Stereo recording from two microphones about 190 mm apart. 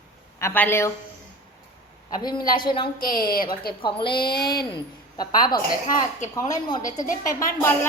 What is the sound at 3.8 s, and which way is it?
A woman's voice, 25° left (ahead or behind).